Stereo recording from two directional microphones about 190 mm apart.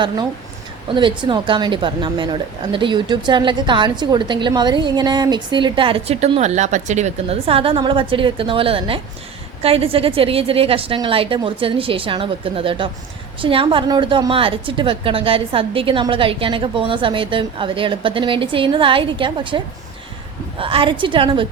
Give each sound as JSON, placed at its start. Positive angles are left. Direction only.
{"t": 0.9, "sound": "a woman's voice", "side_deg": -25}